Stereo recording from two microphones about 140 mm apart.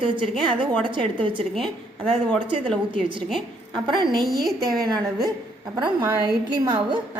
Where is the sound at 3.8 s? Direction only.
30° right (ahead or behind).